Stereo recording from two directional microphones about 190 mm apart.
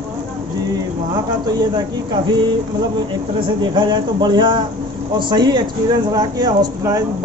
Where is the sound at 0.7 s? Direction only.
20° right (ahead or behind).